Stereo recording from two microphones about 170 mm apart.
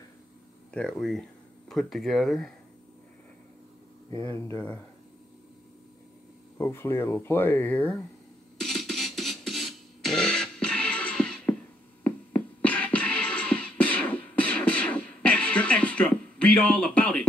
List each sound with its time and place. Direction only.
0.7 s speech: 5° left (ahead or behind)
4.1 s speech: 15° left (ahead or behind)
6.6 s speech: 15° left (ahead or behind)
8.6 s music: centre (ahead or behind)